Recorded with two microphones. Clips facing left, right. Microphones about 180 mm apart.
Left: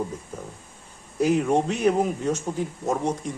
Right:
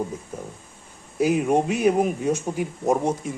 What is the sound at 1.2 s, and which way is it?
A man's voice, 10° right (ahead or behind).